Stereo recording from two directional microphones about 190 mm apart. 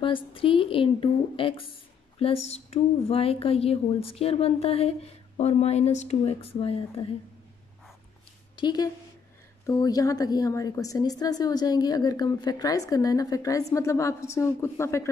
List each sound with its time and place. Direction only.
0.0 s a woman's voice: 25° left (ahead or behind)
8.5 s a woman's voice: 20° left (ahead or behind)